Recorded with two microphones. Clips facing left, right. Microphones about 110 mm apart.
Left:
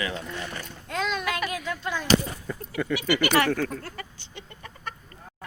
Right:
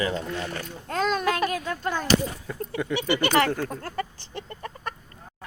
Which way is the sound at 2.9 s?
25° right (ahead or behind).